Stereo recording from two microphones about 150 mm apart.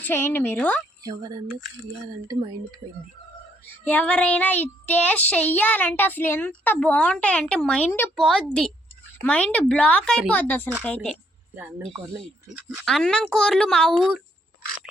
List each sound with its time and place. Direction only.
0.0 s speech: 15° left (ahead or behind)
1.0 s speech: 25° right (ahead or behind)
3.7 s speech: 10° left (ahead or behind)
12.2 s speech: 5° right (ahead or behind)